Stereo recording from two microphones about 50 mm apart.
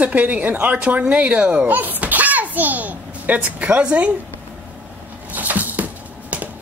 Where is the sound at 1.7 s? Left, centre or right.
Right.